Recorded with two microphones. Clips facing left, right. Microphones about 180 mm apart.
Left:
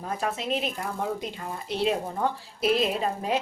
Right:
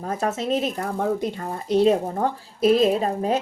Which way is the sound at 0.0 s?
45° right (ahead or behind).